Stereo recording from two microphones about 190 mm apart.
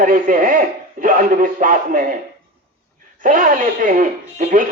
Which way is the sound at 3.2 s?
45° right (ahead or behind).